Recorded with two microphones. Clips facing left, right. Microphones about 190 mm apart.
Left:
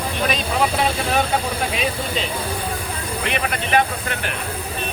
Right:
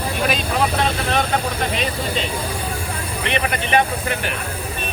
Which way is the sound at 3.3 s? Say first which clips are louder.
Right 2 dB; centre (ahead or behind).